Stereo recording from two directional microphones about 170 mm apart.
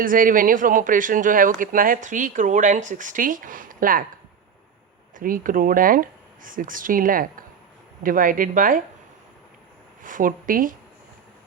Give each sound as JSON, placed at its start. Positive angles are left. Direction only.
{"t": 0.0, "sound": "speech", "side_deg": -55}
{"t": 5.1, "sound": "speech", "side_deg": -55}
{"t": 10.0, "sound": "speech", "side_deg": -50}